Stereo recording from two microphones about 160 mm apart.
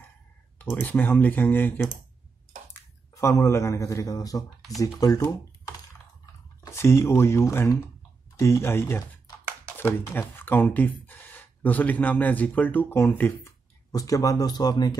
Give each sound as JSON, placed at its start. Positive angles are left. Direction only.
{"t": 0.6, "sound": "speech", "side_deg": 10}
{"t": 6.6, "sound": "speech", "side_deg": 15}